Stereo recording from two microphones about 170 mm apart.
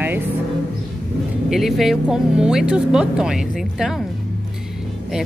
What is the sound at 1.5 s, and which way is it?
A woman's voice, centre (ahead or behind).